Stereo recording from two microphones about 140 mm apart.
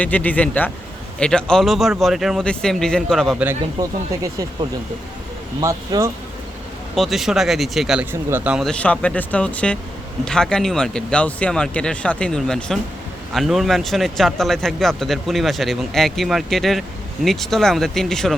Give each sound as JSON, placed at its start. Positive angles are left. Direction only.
{"t": 0.0, "sound": "speech", "side_deg": 10}
{"t": 3.3, "sound": "speech", "side_deg": -15}
{"t": 3.8, "sound": "speech", "side_deg": -25}
{"t": 5.5, "sound": "speech", "side_deg": -25}
{"t": 6.9, "sound": "speech", "side_deg": 0}
{"t": 8.1, "sound": "speech", "side_deg": -15}
{"t": 8.5, "sound": "speech", "side_deg": 5}